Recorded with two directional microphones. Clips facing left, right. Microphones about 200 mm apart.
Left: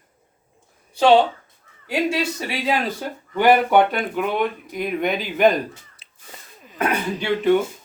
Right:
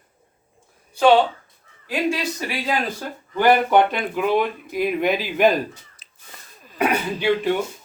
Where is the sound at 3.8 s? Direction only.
Centre (ahead or behind).